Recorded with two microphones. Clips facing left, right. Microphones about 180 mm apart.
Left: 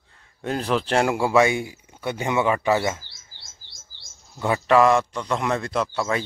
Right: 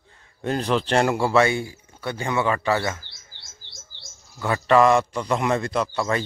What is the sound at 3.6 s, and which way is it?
Bird, 40° left (ahead or behind).